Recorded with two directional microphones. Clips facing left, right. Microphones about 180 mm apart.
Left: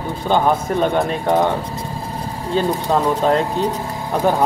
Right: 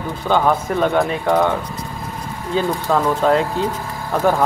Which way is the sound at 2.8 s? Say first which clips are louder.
Right 2 dB; 20° left (ahead or behind).